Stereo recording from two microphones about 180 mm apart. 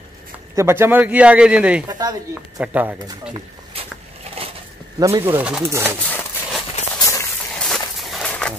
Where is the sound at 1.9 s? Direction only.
20° right (ahead or behind).